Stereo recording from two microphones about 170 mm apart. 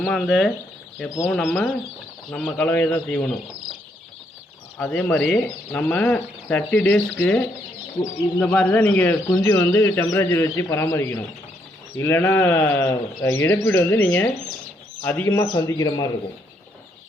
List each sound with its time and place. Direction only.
0.0 s speech: 5° left (ahead or behind)
4.8 s speech: 10° left (ahead or behind)
8.5 s a man's voice: 5° left (ahead or behind)